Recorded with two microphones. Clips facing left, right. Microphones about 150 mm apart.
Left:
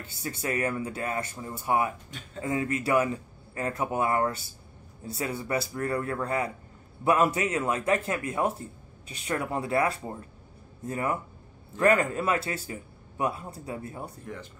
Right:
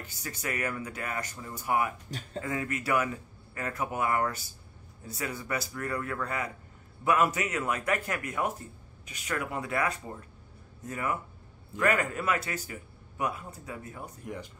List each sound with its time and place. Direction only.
0.0 s speech: 30° left (ahead or behind)
2.0 s speech: 35° right (ahead or behind)
2.4 s speech: 25° left (ahead or behind)
14.2 s speech: 15° right (ahead or behind)